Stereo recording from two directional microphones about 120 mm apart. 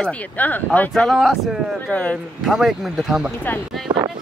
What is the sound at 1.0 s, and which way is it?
Speech, centre (ahead or behind).